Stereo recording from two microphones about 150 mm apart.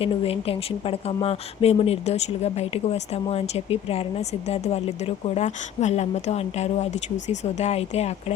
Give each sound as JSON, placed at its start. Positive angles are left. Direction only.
{"t": 0.0, "sound": "speech", "side_deg": 40}